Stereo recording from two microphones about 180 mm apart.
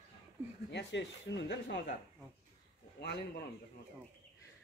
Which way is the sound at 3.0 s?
65° left (ahead or behind).